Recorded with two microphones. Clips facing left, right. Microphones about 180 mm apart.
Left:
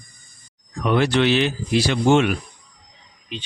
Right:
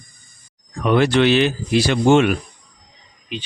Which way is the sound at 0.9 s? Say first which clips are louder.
Right 3 dB; 60° right (ahead or behind).